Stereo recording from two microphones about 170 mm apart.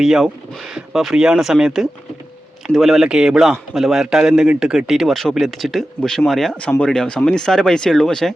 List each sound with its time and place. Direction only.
0.0 s a man's voice: centre (ahead or behind)